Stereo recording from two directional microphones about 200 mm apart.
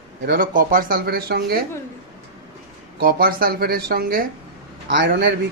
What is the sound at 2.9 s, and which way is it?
Speech, 50° right (ahead or behind).